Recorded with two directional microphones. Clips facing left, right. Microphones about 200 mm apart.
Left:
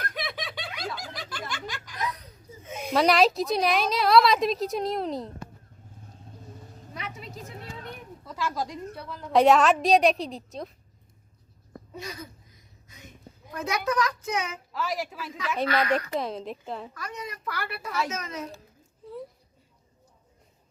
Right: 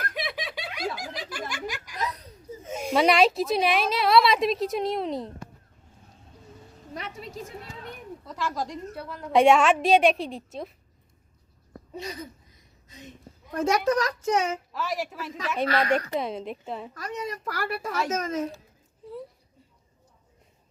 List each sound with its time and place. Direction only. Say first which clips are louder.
0.1 s snicker: right 2 dB; 5° right (ahead or behind)
1.3 s a sound: right 2 dB; 10° right (ahead or behind)
2.6 s a sound: right 3 dB; 45° right (ahead or behind)
2.9 s a woman's voice: right 1 dB; centre (ahead or behind)
6.9 s a sound: right 3 dB; 40° right (ahead or behind)
8.2 s a woman's voice: even; centre (ahead or behind)
11.9 s speech: right 3 dB; 30° right (ahead or behind)
13.5 s a woman's voice: right 5 dB; 45° right (ahead or behind)
14.7 s a woman's voice: even; centre (ahead or behind)
15.6 s speech: right 1 dB; 30° right (ahead or behind)
16.1 s a woman's voice: right 1 dB; centre (ahead or behind)
16.9 s a woman's voice: right 5 dB; 40° right (ahead or behind)